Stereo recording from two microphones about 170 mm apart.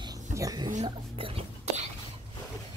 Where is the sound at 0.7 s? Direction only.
35° right (ahead or behind).